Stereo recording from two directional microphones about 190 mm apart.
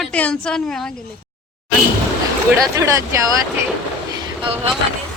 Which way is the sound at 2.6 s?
15° right (ahead or behind).